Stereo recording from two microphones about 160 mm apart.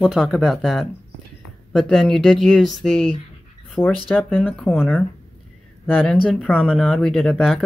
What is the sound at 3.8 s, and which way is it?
Speech, 30° left (ahead or behind).